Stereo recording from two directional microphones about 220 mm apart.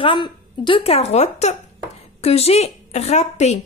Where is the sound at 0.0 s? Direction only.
20° left (ahead or behind).